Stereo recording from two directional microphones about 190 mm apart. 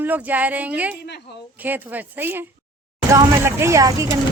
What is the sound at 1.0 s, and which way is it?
Speech, 60° left (ahead or behind).